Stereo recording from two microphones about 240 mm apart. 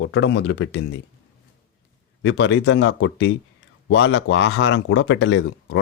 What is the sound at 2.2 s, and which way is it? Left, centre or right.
Speech, left.